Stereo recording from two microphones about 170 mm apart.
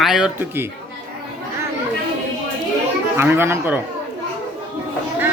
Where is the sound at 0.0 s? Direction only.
Centre (ahead or behind).